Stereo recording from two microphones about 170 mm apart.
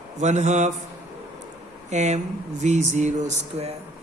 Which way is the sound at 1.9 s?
40° right (ahead or behind).